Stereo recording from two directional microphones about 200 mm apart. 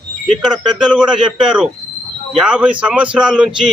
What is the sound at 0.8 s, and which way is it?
A man's voice, 5° right (ahead or behind).